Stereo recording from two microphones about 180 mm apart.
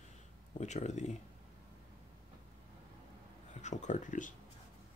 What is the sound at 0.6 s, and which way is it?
Speech, 40° left (ahead or behind).